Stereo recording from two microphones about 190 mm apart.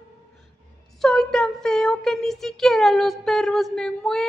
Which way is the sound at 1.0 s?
Centre (ahead or behind).